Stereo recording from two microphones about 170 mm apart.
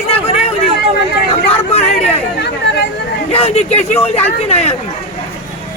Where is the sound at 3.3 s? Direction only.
35° left (ahead or behind).